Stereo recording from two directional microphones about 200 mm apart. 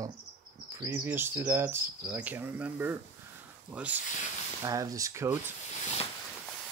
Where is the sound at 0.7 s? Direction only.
10° right (ahead or behind).